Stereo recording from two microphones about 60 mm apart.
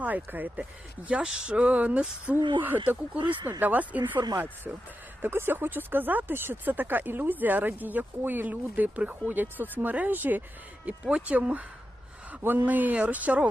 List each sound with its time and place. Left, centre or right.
0.0 s speech: right
2.3 s speech: right
11.0 s speech: right
12.4 s speech: right
12.6 s speech: right